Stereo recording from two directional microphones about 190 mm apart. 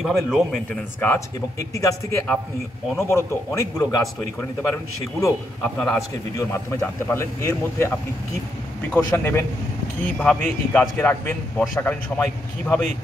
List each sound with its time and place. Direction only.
0.0 s a man's voice: centre (ahead or behind)
1.0 s a man's voice: 15° left (ahead or behind)
5.2 s a man's voice: 5° left (ahead or behind)